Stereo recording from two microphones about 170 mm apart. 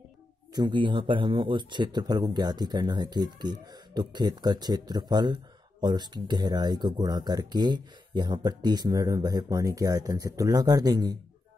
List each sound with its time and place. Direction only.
0.6 s speech: 25° right (ahead or behind)